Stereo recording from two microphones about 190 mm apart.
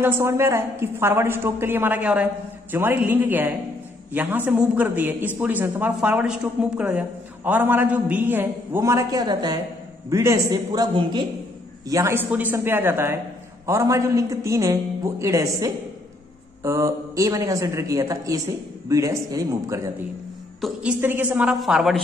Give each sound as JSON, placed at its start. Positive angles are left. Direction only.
{"t": 0.0, "sound": "a man's voice", "side_deg": -15}